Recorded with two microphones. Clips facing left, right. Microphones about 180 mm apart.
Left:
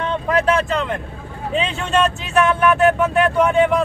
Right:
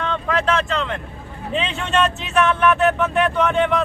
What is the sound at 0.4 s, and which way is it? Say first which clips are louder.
Speech: left 3 dB; 10° left (ahead or behind).